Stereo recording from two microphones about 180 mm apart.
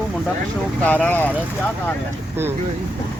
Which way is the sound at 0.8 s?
10° left (ahead or behind).